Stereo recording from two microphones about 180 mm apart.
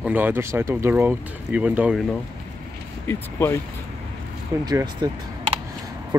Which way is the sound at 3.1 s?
15° left (ahead or behind).